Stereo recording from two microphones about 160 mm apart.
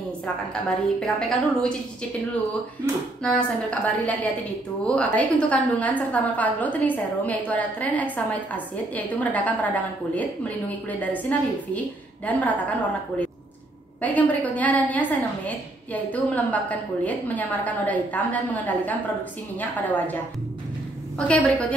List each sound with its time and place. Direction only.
0.7 s a woman's voice: centre (ahead or behind)
3.3 s a woman's voice: 5° left (ahead or behind)
14.0 s a woman's voice: 10° left (ahead or behind)
21.3 s a woman's voice: 5° left (ahead or behind)